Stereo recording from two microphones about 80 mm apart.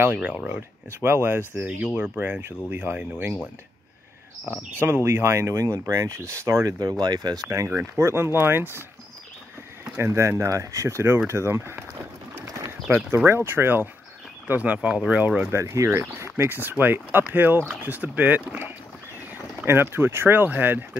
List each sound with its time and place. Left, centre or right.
0.0 s speech: centre
0.6 s speech: right
1.6 s speech: centre
4.5 s speech: right
7.5 s speech: right
9.9 s speech: right
12.4 s bird: right
12.8 s speech: right
15.5 s speech: right